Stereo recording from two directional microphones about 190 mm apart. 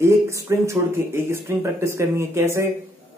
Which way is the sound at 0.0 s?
15° right (ahead or behind).